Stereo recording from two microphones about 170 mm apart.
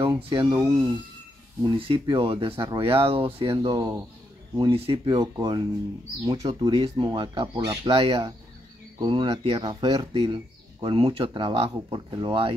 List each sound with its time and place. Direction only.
0.1 s speech: 25° right (ahead or behind)
1.6 s speech: 30° right (ahead or behind)